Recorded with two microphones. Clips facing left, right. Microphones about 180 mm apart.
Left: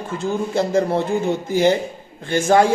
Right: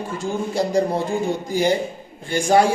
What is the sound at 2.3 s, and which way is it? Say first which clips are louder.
Speech: left 1 dB; 15° right (ahead or behind).